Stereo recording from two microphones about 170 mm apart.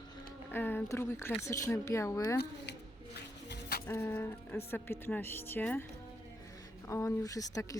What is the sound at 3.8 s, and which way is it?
Speech, 15° left (ahead or behind).